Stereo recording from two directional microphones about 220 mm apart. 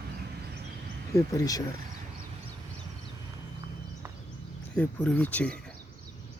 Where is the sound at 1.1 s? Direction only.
15° left (ahead or behind).